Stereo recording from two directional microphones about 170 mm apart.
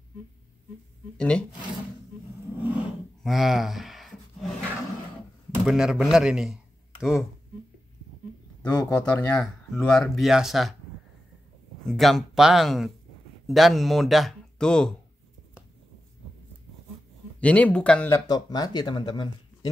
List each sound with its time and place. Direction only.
1.1 s speech: 5° left (ahead or behind)
2.6 s a sound: 10° right (ahead or behind)
5.7 s a man's voice: centre (ahead or behind)
8.9 s speech: 10° left (ahead or behind)
11.9 s speech: centre (ahead or behind)
17.4 s speech: 10° left (ahead or behind)
18.2 s speech: 25° left (ahead or behind)